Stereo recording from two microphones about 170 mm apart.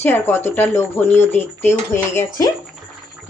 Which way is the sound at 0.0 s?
10° left (ahead or behind).